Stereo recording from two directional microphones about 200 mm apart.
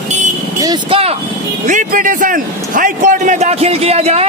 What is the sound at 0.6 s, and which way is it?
Speech, 25° right (ahead or behind).